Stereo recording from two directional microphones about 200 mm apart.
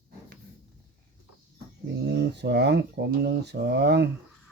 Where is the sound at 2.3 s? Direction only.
55° right (ahead or behind).